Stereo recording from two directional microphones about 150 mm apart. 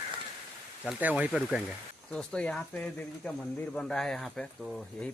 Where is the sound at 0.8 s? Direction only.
10° right (ahead or behind).